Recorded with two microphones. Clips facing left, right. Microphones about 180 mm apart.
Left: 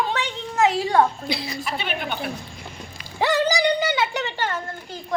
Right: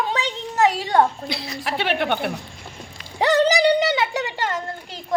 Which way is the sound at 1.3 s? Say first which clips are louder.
Left 2 dB; centre (ahead or behind).